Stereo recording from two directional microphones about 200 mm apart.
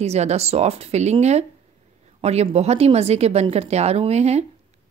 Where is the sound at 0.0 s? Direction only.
30° right (ahead or behind).